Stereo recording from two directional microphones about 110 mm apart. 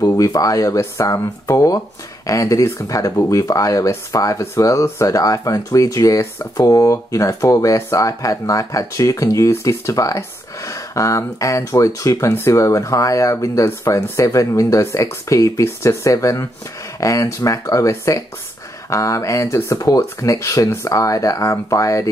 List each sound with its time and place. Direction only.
0.0 s speech: 35° left (ahead or behind)